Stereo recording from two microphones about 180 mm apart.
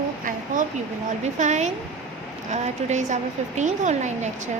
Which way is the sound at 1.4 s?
40° right (ahead or behind).